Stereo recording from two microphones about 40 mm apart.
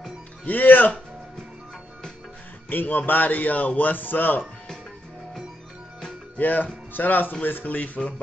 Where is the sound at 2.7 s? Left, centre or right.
Left.